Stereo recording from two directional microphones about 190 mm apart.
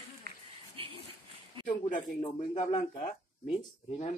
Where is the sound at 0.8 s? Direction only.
30° right (ahead or behind).